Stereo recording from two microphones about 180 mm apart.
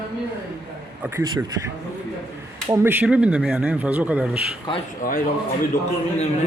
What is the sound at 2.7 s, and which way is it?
A man's voice, 10° right (ahead or behind).